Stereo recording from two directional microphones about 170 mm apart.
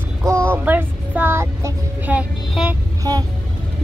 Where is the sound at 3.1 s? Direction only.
25° right (ahead or behind).